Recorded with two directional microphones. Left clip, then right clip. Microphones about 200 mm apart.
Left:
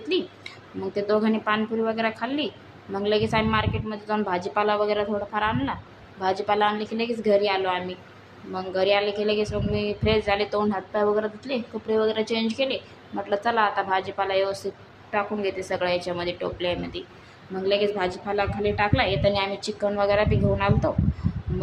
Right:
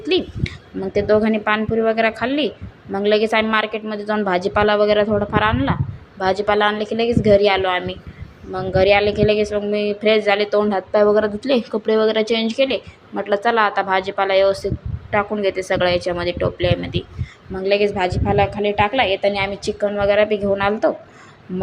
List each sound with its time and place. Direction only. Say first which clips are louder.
0.1 s a woman's voice: right 6 dB; 25° right (ahead or behind)